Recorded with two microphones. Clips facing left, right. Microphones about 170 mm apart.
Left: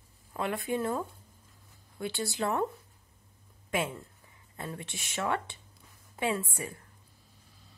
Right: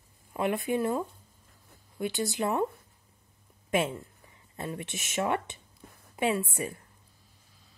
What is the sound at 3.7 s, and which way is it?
Speech, 25° right (ahead or behind).